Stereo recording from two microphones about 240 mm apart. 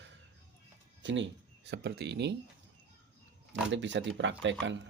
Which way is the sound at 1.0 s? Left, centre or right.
Right.